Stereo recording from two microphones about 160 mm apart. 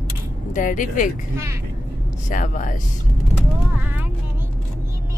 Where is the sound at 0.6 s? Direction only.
55° left (ahead or behind).